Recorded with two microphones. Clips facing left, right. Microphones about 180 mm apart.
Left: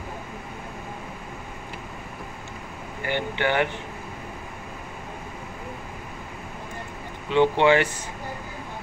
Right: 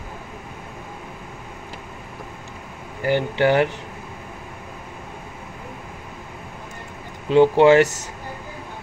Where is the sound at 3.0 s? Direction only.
40° right (ahead or behind).